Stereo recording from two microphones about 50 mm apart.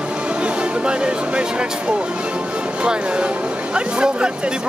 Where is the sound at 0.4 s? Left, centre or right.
Centre.